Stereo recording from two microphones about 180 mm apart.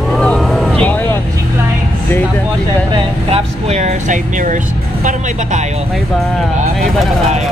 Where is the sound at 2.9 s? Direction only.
35° right (ahead or behind).